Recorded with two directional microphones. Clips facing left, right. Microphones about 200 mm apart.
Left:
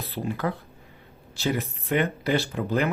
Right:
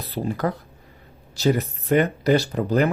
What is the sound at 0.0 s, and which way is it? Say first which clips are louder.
Speech: right 4 dB; 40° right (ahead or behind).